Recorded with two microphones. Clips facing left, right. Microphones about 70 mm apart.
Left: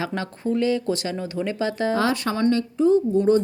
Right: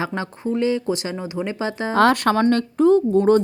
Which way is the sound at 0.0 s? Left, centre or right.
Right.